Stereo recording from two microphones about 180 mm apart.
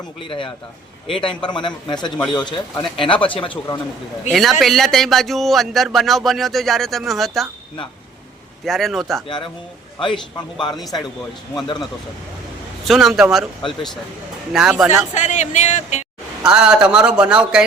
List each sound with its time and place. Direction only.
0.2 s a man's voice: 30° left (ahead or behind)
4.3 s speech: centre (ahead or behind)
8.6 s speech: centre (ahead or behind)
11.5 s a man's voice: 25° left (ahead or behind)
12.8 s speech: centre (ahead or behind)
14.8 s speech: 40° left (ahead or behind)
16.4 s speech: 5° right (ahead or behind)